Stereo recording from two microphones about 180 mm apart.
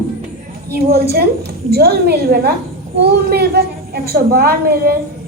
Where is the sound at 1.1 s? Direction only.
65° right (ahead or behind).